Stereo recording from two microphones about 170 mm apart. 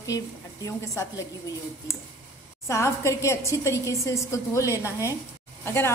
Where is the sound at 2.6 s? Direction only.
15° left (ahead or behind).